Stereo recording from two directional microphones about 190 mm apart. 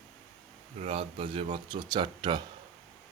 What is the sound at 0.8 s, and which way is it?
Speech, 30° right (ahead or behind).